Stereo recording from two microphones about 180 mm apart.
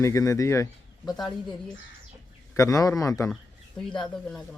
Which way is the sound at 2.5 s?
20° left (ahead or behind).